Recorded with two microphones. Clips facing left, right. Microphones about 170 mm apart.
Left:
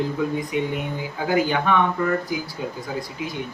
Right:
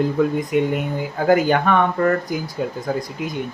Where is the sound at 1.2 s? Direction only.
50° right (ahead or behind).